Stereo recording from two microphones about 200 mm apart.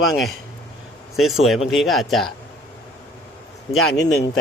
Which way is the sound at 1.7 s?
Centre (ahead or behind).